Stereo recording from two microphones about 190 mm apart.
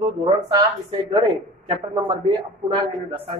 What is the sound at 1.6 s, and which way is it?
Speech, 25° right (ahead or behind).